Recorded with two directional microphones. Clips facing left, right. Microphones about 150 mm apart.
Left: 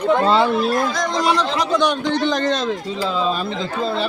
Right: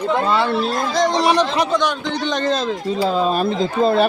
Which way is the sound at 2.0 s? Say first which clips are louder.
Left 1 dB; centre (ahead or behind).